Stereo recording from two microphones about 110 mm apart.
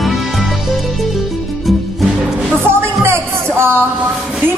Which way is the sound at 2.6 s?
20° right (ahead or behind).